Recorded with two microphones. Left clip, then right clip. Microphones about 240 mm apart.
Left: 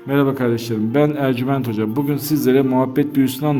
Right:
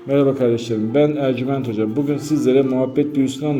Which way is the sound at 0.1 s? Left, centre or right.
Left.